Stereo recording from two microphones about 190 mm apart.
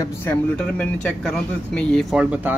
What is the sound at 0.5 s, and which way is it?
Speech, 5° left (ahead or behind).